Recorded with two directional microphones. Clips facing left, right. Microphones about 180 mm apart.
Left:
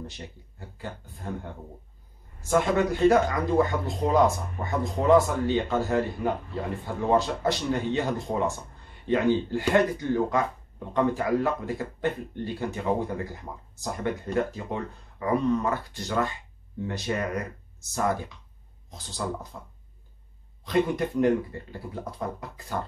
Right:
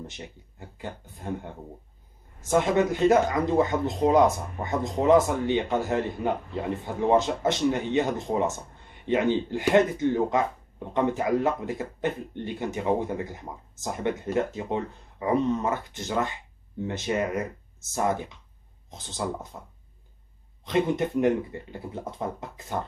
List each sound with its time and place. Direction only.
0.0 s speech: 20° right (ahead or behind)